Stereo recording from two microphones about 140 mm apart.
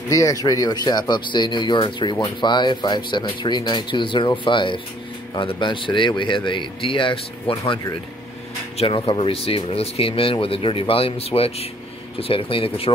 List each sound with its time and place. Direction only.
0.1 s speech: 25° left (ahead or behind); by 12.9 s 40° left (ahead or behind)